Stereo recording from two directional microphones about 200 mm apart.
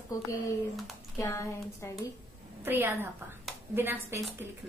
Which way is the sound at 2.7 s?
10° right (ahead or behind).